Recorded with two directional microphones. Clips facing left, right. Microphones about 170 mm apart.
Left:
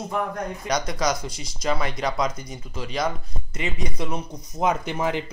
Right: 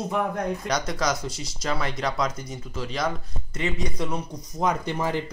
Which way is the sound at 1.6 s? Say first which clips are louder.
Left 2 dB; 15° left (ahead or behind).